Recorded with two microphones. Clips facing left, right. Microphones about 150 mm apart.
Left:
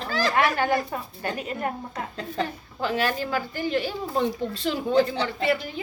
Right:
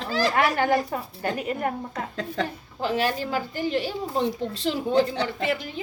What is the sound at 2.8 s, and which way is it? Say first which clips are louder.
A woman's voice: right 1 dB; 35° right (ahead or behind).